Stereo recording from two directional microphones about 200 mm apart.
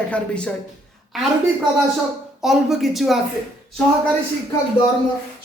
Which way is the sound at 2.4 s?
Centre (ahead or behind).